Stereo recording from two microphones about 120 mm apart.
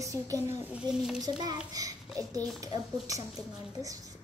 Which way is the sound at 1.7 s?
30° right (ahead or behind).